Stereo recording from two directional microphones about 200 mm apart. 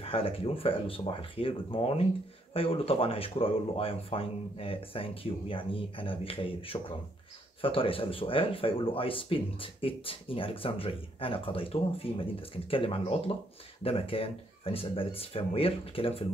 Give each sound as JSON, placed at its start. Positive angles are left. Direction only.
{"t": 0.0, "sound": "speech", "side_deg": 30}